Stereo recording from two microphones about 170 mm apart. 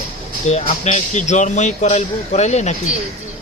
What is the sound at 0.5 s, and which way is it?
Speech, 45° left (ahead or behind).